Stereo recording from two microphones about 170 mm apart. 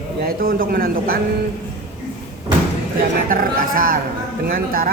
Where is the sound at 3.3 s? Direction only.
55° right (ahead or behind).